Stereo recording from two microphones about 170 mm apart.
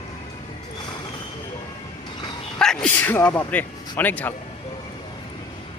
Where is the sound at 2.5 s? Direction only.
5° left (ahead or behind).